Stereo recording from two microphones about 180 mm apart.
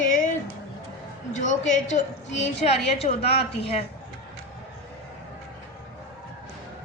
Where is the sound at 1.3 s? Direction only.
45° left (ahead or behind).